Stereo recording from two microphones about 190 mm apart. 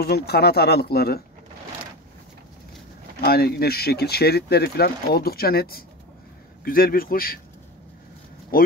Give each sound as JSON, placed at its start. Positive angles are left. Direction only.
{"t": 0.0, "sound": "speech", "side_deg": 55}
{"t": 3.3, "sound": "a man's voice", "side_deg": 55}